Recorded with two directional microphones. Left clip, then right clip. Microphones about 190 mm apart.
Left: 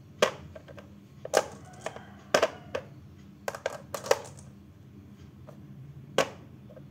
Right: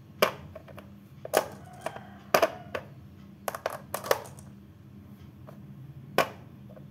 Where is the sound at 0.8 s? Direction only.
20° right (ahead or behind).